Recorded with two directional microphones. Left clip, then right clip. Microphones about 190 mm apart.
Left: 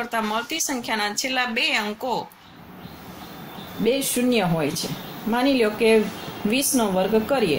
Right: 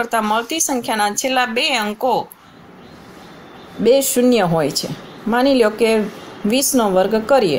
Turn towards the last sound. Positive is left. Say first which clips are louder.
# right 6 dB
turn(degrees=-50)  # may be behind; listen again after turning